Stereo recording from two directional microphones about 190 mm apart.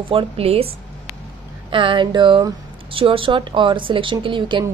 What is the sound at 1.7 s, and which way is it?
A woman's voice, 25° right (ahead or behind).